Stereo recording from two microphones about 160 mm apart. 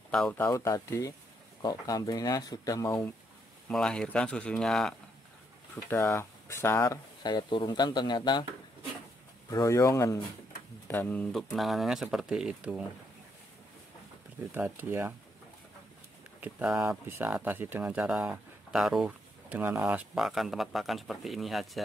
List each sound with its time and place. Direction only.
0.1 s speech: 5° left (ahead or behind)
0.5 s speech: 20° left (ahead or behind)
3.6 s speech: 5° left (ahead or behind)
5.9 s speech: 15° left (ahead or behind)
7.2 s speech: 30° left (ahead or behind)
9.5 s speech: 20° left (ahead or behind)
11.5 s speech: centre (ahead or behind)
14.5 s speech: 15° right (ahead or behind)
16.3 s speech: 10° right (ahead or behind)